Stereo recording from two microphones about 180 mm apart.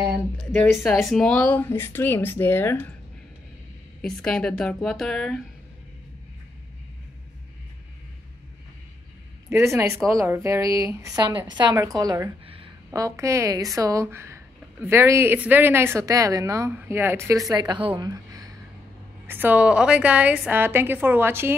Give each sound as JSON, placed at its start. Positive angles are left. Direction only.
{"t": 0.7, "sound": "speech", "side_deg": 0}
{"t": 4.0, "sound": "a woman's voice", "side_deg": 5}
{"t": 9.5, "sound": "a woman's voice", "side_deg": -15}
{"t": 11.8, "sound": "a sound", "side_deg": -20}
{"t": 13.0, "sound": "a woman's voice", "side_deg": -15}
{"t": 17.5, "sound": "a woman's voice", "side_deg": -25}